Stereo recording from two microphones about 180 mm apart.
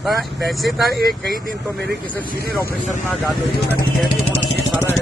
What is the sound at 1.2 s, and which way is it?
Speech, 50° right (ahead or behind).